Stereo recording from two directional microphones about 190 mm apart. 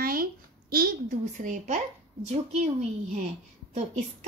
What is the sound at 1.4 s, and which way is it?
A woman's voice, 40° right (ahead or behind).